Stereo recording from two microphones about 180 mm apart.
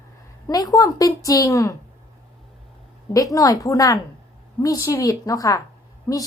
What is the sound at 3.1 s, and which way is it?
A woman's voice, 20° left (ahead or behind).